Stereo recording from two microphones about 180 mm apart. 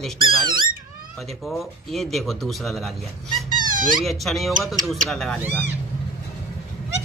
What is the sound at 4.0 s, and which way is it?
Speech, centre (ahead or behind).